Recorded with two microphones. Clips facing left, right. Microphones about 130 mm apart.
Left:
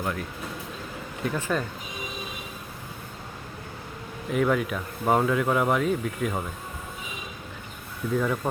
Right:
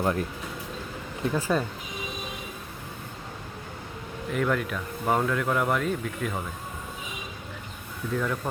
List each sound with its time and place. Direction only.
0.0 s speech: 30° right (ahead or behind)
1.5 s speech: centre (ahead or behind)
4.3 s speech: 5° left (ahead or behind)
8.1 s speech: 10° left (ahead or behind)